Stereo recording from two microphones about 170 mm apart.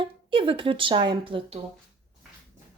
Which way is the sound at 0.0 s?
30° right (ahead or behind).